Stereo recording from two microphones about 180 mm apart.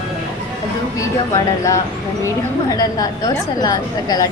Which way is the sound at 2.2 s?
20° left (ahead or behind).